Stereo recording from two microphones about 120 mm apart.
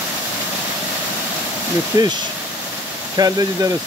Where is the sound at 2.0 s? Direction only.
30° right (ahead or behind).